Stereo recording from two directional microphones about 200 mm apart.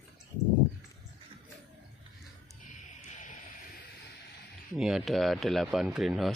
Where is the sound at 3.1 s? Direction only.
40° left (ahead or behind).